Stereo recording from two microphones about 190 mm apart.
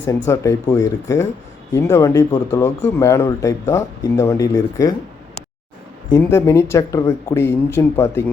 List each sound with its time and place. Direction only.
0.3 s speech: 15° left (ahead or behind)
6.1 s speech: 15° left (ahead or behind)